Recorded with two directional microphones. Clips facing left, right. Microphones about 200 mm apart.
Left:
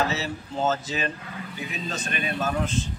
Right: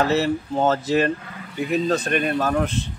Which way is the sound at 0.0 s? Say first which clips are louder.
Right 7 dB; 60° right (ahead or behind).